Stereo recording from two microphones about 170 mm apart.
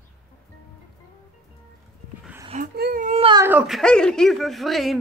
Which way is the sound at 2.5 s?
60° right (ahead or behind).